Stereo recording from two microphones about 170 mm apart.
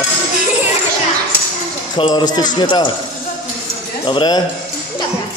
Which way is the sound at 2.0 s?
25° left (ahead or behind).